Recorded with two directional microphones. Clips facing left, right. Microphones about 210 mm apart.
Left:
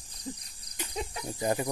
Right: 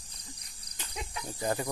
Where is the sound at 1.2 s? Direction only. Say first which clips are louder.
Left 2 dB; 15° left (ahead or behind).